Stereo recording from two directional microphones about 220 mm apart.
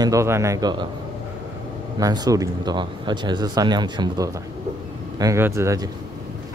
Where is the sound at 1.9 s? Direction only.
15° right (ahead or behind).